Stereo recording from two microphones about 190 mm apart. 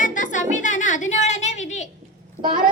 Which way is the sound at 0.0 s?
40° left (ahead or behind).